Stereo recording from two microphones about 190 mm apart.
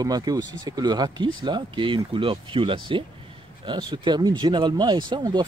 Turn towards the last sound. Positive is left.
turn(degrees=-25)  # may be behind; listen again after turning